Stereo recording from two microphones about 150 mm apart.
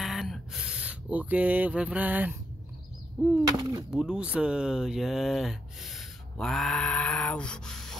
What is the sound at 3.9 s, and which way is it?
Speech, 5° right (ahead or behind).